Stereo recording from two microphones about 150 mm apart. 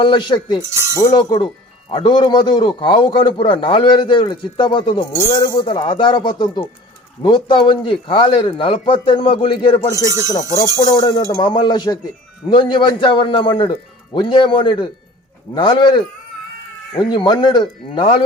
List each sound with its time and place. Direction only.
0.0 s a man's voice: 35° left (ahead or behind)
10.1 s speech: 20° right (ahead or behind)
10.8 s a man's voice: 25° left (ahead or behind)